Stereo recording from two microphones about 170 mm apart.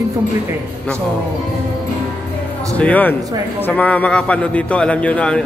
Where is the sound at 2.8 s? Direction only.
10° left (ahead or behind).